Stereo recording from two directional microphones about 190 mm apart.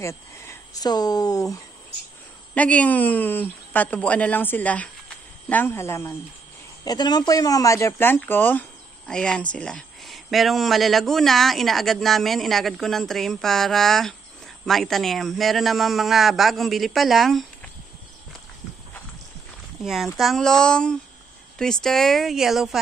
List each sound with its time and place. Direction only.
0.0 s speech: 15° left (ahead or behind)
2.5 s speech: 5° left (ahead or behind)
19.8 s speech: centre (ahead or behind)